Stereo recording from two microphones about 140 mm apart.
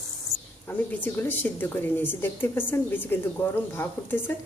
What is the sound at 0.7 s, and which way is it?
A woman's voice, 10° left (ahead or behind).